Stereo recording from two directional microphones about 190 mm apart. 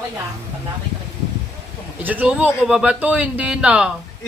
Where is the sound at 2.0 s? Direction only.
10° right (ahead or behind).